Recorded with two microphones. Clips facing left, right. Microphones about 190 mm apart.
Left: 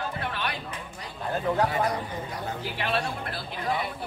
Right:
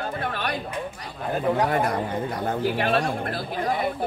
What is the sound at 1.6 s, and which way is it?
Speech, 55° right (ahead or behind).